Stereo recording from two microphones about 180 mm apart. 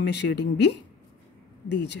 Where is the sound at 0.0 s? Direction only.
70° left (ahead or behind).